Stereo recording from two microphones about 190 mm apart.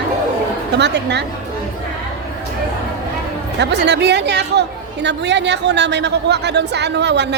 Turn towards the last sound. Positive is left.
turn(degrees=-65)  # may be behind; listen again after turning